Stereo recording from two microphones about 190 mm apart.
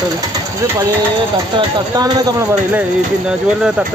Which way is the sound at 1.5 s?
25° right (ahead or behind).